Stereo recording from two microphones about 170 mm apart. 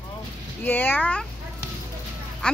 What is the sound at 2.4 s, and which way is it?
Speech, 5° left (ahead or behind).